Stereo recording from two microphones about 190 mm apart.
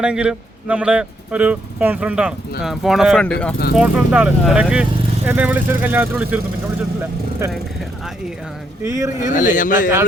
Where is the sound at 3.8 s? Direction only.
5° right (ahead or behind).